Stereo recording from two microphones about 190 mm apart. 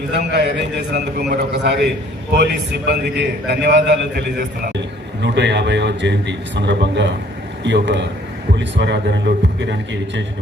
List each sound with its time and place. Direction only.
0.1 s a man's voice: 65° right (ahead or behind)